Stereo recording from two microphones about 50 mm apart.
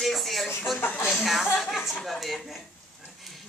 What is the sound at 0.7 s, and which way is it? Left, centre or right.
Speech, left.